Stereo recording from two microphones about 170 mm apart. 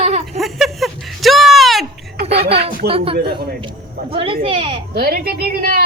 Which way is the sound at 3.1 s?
70° right (ahead or behind).